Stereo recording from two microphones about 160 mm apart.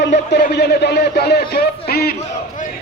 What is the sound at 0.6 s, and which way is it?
A man's voice, 90° left.